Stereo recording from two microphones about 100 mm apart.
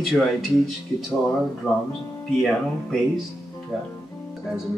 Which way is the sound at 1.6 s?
Centre (ahead or behind).